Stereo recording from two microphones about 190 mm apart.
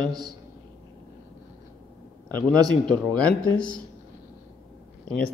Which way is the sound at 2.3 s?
10° left (ahead or behind).